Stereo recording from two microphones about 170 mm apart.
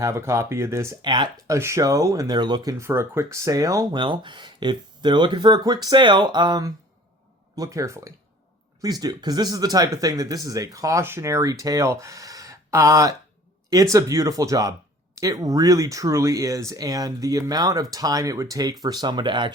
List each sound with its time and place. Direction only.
0.0 s speech: 15° right (ahead or behind)
1.0 s speech: 25° right (ahead or behind)
1.5 s speech: 15° right (ahead or behind)